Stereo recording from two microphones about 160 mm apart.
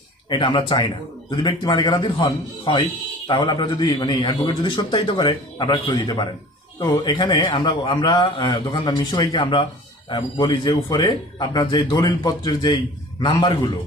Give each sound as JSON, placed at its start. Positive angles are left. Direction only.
{"t": 0.3, "sound": "a man's voice", "side_deg": 30}